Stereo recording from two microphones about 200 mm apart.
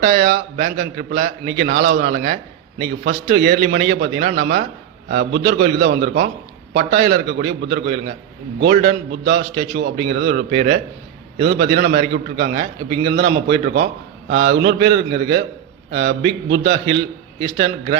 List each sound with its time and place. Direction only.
0.0 s a man's voice: 50° right (ahead or behind)